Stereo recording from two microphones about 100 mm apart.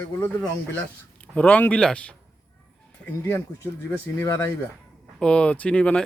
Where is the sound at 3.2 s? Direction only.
20° left (ahead or behind).